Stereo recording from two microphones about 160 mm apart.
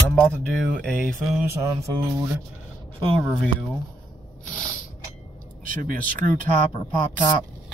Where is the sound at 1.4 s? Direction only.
15° right (ahead or behind).